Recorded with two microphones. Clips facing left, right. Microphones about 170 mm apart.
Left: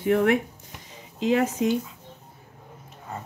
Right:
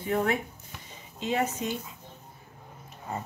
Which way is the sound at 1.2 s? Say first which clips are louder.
Left 6 dB; 90° left.